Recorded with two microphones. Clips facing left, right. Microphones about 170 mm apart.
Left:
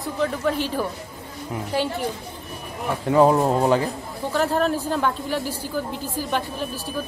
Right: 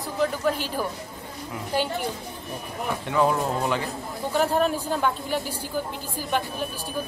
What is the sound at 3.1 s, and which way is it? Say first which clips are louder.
Speech: left 7 dB; 35° left (ahead or behind).